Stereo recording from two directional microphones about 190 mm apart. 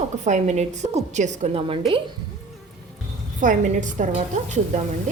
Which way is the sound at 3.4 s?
40° right (ahead or behind).